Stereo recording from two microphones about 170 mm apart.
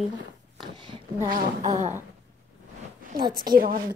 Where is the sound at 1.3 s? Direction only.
45° right (ahead or behind).